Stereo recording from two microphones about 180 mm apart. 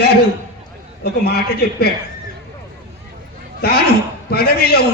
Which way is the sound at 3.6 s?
60° left (ahead or behind).